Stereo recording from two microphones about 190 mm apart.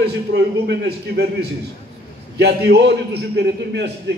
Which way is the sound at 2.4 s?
60° right (ahead or behind).